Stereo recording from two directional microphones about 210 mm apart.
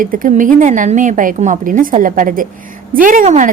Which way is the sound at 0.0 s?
40° right (ahead or behind).